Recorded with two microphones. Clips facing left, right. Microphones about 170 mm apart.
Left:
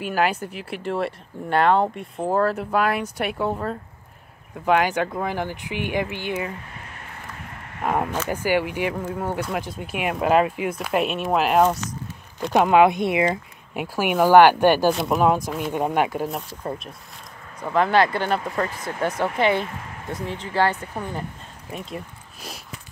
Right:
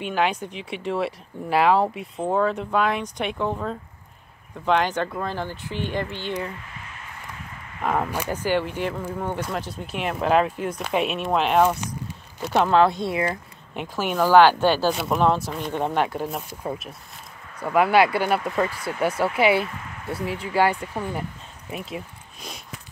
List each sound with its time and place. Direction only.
0.0 s speech: 5° left (ahead or behind)
7.8 s speech: 10° left (ahead or behind)
12.5 s speech: 15° left (ahead or behind)
14.9 s speech: centre (ahead or behind)
16.3 s speech: 5° right (ahead or behind)